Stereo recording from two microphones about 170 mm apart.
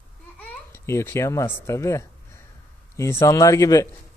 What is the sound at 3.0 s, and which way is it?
Speech, 15° left (ahead or behind).